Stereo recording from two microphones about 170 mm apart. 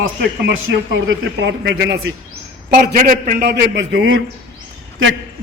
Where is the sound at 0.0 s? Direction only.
80° right.